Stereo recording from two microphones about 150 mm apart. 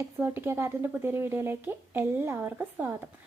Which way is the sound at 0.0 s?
15° right (ahead or behind).